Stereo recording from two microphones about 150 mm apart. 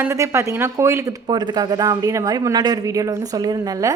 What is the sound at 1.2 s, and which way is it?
A woman's voice, 30° right (ahead or behind).